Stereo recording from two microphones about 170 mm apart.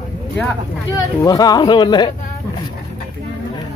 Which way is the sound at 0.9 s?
20° left (ahead or behind).